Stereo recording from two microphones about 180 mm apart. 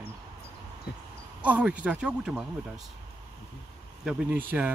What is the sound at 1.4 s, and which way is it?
Speech, 10° right (ahead or behind).